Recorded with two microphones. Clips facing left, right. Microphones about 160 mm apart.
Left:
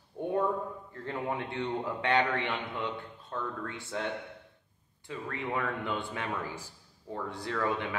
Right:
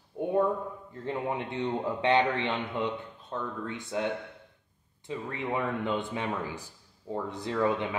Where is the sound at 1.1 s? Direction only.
20° right (ahead or behind).